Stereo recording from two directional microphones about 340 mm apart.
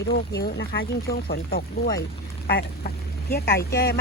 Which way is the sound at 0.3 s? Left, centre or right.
Left.